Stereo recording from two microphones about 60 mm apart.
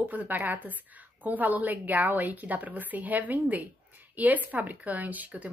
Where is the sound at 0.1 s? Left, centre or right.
Right.